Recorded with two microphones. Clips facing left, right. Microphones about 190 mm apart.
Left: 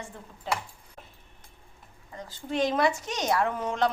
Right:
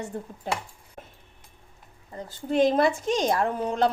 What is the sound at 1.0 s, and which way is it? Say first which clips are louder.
Dog: right 5 dB; 50° right (ahead or behind).